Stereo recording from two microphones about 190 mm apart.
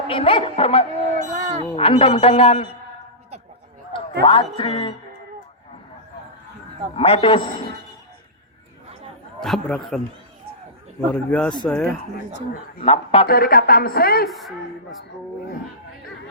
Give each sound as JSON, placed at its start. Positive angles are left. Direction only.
{"t": 0.1, "sound": "speech", "side_deg": 30}
{"t": 1.1, "sound": "speech", "side_deg": -35}
{"t": 1.7, "sound": "speech", "side_deg": 30}
{"t": 4.2, "sound": "speech", "side_deg": 25}
{"t": 6.9, "sound": "speech", "side_deg": 30}
{"t": 9.4, "sound": "a woman's voice", "side_deg": 0}
{"t": 11.1, "sound": "a woman's voice", "side_deg": 5}
{"t": 12.8, "sound": "speech", "side_deg": 30}
{"t": 13.2, "sound": "speech", "side_deg": 50}
{"t": 14.3, "sound": "a woman's voice", "side_deg": 0}